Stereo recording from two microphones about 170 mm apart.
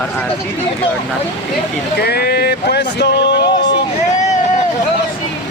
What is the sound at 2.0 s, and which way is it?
Speech, 70° left (ahead or behind).